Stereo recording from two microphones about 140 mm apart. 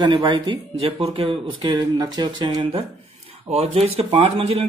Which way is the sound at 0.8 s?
45° right (ahead or behind).